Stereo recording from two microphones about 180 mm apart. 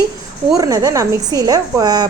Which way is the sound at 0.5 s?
20° right (ahead or behind).